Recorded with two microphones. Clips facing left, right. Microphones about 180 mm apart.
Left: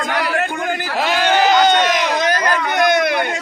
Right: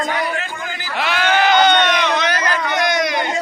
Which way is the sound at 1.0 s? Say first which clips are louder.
Left 1 dB; 40° left (ahead or behind).